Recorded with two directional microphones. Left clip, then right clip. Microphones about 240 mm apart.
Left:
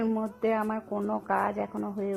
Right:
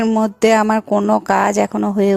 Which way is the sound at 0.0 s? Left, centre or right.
Right.